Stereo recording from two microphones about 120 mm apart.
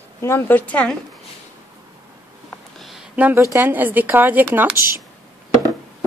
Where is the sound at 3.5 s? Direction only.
15° right (ahead or behind).